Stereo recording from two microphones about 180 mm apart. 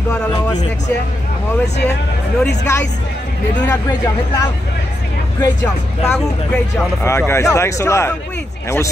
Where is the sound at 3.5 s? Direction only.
10° left (ahead or behind).